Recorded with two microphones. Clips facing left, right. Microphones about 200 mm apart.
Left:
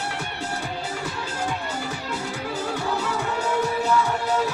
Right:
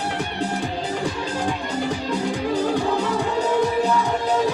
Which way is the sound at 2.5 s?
35° right (ahead or behind).